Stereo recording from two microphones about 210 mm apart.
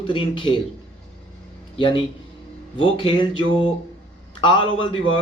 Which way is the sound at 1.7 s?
25° left (ahead or behind).